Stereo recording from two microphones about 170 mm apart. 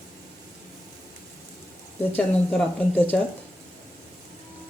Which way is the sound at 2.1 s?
10° left (ahead or behind).